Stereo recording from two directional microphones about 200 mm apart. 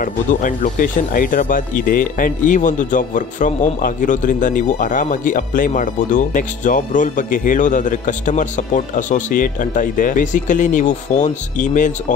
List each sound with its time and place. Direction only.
0.0 s speech: 40° left (ahead or behind)